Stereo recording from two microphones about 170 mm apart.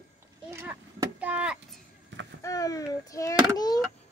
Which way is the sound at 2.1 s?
90° right.